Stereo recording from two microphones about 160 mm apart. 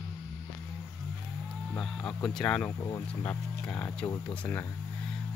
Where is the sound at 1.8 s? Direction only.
5° left (ahead or behind).